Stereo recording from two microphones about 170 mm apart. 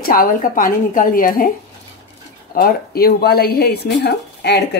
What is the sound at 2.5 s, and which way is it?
Speech, 60° left (ahead or behind).